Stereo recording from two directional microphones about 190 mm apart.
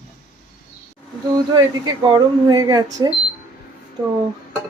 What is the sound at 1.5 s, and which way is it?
Speech, 20° right (ahead or behind).